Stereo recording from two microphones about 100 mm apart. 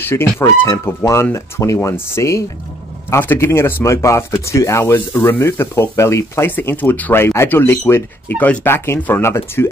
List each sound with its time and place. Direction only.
0.0 s speech: 25° left (ahead or behind)